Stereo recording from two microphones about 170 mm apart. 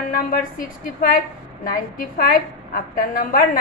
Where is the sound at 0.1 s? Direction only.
55° left (ahead or behind).